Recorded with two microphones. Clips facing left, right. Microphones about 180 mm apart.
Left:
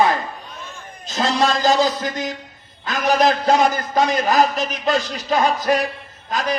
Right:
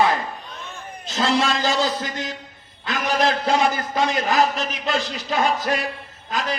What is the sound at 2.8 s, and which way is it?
A man's voice, 40° left (ahead or behind).